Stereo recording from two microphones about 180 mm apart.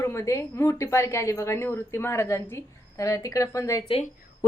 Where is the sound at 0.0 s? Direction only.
15° left (ahead or behind).